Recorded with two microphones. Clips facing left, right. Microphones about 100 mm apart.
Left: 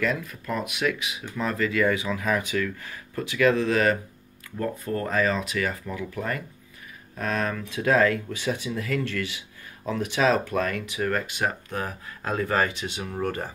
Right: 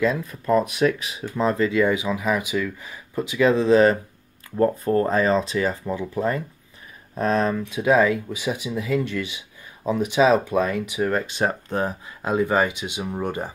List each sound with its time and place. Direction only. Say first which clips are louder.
0.0 s speech: right 5 dB; 25° right (ahead or behind)
12.2 s speech: right 4 dB; 15° right (ahead or behind)